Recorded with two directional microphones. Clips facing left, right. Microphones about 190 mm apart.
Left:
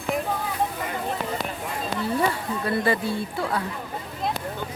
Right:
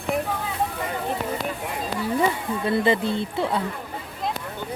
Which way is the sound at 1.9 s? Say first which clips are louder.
Right 2 dB; 10° right (ahead or behind).